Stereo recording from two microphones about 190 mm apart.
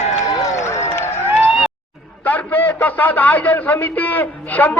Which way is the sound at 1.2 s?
5° right (ahead or behind).